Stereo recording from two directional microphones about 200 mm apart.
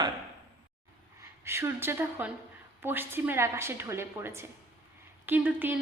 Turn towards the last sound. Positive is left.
turn(degrees=-10)  # may be behind; listen again after turning